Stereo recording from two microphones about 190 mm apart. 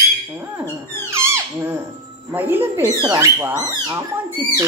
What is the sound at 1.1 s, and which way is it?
Squeak, 15° right (ahead or behind).